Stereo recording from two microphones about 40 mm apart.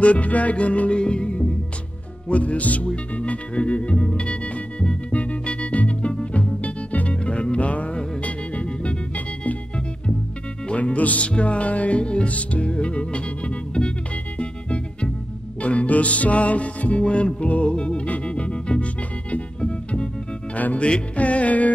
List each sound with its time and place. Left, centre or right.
0.0 s music: left
9.1 s organ: left
10.7 s music: left
20.5 s music: left
20.8 s music: left